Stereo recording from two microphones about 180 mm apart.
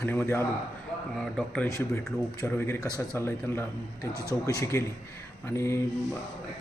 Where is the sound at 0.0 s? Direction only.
10° left (ahead or behind).